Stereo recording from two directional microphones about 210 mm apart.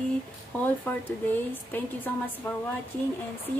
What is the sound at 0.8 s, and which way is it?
Speech, 10° left (ahead or behind).